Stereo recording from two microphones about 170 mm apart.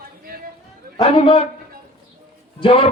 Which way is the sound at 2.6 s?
30° left (ahead or behind).